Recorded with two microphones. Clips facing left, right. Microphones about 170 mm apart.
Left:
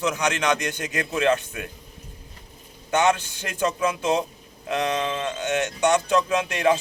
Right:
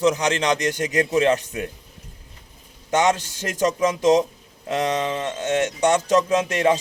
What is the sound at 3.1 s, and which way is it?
A man's voice, 40° right (ahead or behind).